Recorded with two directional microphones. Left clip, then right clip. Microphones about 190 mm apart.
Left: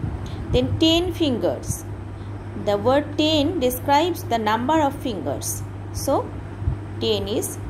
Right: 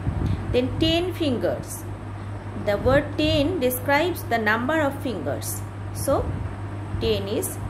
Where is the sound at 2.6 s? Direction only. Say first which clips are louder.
Left 1 dB; 15° left (ahead or behind).